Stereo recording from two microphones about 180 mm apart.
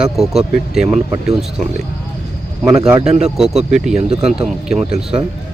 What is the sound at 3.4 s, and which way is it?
Speech, 5° right (ahead or behind).